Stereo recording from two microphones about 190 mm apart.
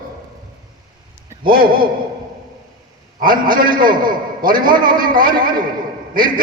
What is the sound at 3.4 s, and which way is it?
A man's voice, 45° right (ahead or behind).